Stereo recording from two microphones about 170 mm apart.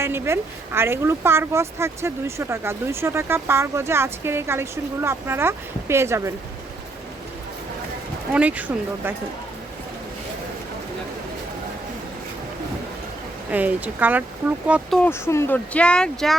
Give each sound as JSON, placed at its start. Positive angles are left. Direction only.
{"t": 0.0, "sound": "speech", "side_deg": -15}
{"t": 8.3, "sound": "speech", "side_deg": -10}
{"t": 13.5, "sound": "speech", "side_deg": -10}
{"t": 14.7, "sound": "speech", "side_deg": 0}
{"t": 15.3, "sound": "speech", "side_deg": 15}